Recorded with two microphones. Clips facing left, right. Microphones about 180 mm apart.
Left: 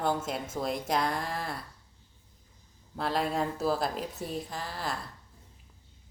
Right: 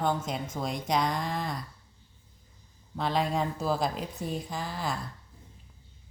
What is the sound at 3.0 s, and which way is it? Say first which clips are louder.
Speech: right 1 dB; 5° left (ahead or behind).